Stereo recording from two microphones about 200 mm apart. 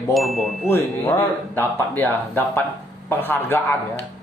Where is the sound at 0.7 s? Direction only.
10° left (ahead or behind).